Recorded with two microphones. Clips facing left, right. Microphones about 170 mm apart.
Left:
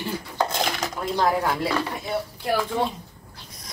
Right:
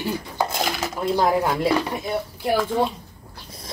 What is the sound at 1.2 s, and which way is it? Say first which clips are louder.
Speech: right 1 dB; 15° right (ahead or behind).